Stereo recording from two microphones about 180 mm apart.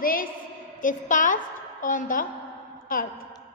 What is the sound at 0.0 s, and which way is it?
A woman's voice, 50° left (ahead or behind).